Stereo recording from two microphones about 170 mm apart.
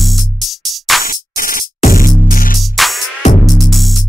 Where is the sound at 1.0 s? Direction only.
55° left (ahead or behind).